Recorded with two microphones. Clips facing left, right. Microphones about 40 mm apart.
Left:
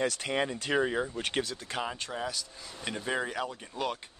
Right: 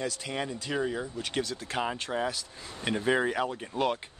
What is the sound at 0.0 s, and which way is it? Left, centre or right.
Speech, left.